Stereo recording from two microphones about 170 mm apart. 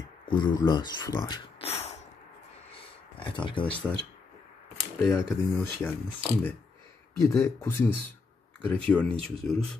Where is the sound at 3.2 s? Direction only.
30° left (ahead or behind).